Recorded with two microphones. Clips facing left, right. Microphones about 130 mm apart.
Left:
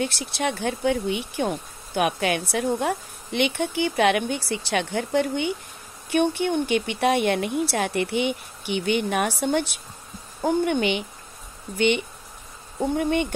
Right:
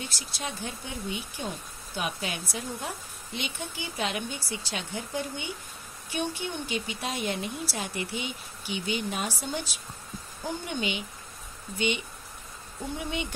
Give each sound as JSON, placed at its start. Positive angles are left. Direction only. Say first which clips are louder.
{"t": 0.0, "sound": "speech", "louder": "left 11 dB", "side_deg": 65}
{"t": 12.9, "sound": "speech", "louder": "left 10 dB", "side_deg": 55}